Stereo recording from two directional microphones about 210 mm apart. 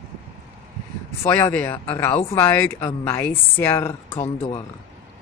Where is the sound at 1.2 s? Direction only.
10° left (ahead or behind).